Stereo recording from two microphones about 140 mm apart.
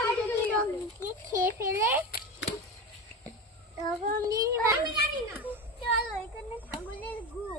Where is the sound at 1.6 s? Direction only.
15° right (ahead or behind).